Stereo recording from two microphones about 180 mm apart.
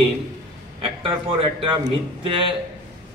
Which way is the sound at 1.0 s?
30° right (ahead or behind).